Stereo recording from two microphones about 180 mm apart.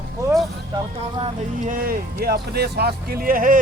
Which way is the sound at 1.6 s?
50° right (ahead or behind).